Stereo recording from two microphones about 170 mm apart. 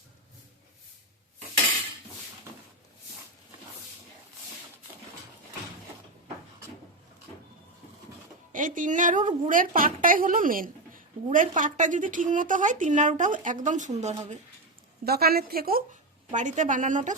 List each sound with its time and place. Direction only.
8.5 s a woman's voice: 50° right (ahead or behind)
15.0 s a woman's voice: 65° right (ahead or behind)
16.3 s a woman's voice: 45° right (ahead or behind)